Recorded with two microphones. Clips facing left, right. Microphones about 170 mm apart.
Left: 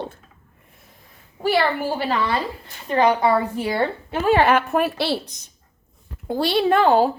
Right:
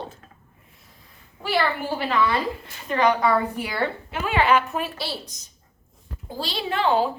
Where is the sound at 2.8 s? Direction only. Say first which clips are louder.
Left 3 dB; 30° left (ahead or behind).